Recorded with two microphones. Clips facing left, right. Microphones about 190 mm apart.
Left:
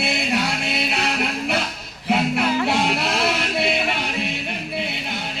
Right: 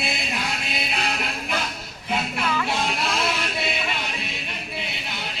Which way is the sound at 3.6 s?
60° left (ahead or behind).